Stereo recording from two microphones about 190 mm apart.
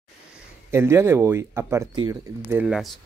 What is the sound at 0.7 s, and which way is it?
Speech, 15° right (ahead or behind).